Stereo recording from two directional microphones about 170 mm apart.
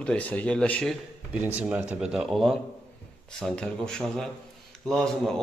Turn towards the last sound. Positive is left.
turn(degrees=5)  # may be behind; listen again after turning